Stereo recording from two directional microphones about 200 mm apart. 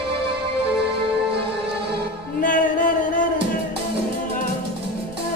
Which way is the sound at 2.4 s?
40° left (ahead or behind).